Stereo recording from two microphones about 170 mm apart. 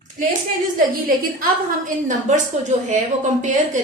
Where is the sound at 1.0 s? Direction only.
55° right (ahead or behind).